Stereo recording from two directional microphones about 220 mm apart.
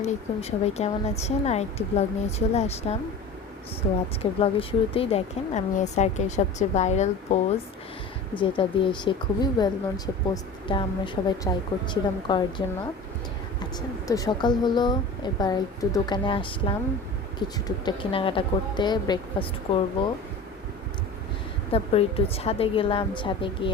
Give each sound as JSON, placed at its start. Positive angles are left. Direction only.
{"t": 0.0, "sound": "a woman's voice", "side_deg": 30}
{"t": 4.2, "sound": "speech", "side_deg": 25}
{"t": 8.4, "sound": "a woman's voice", "side_deg": 20}
{"t": 14.1, "sound": "a woman's voice", "side_deg": 15}
{"t": 21.7, "sound": "a woman's voice", "side_deg": 25}